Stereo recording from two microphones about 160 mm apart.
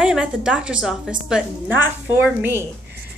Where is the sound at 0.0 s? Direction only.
5° right (ahead or behind).